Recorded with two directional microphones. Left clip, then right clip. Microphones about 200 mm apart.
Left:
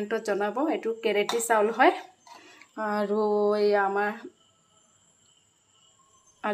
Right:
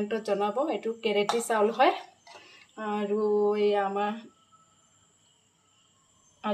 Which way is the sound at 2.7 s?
25° left (ahead or behind).